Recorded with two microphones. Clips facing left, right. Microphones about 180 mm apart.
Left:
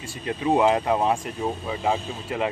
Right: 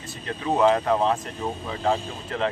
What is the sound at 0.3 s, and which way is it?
Speech, 15° left (ahead or behind).